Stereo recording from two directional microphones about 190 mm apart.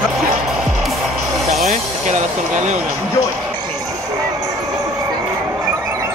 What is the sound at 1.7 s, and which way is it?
Vehicle, 40° right (ahead or behind).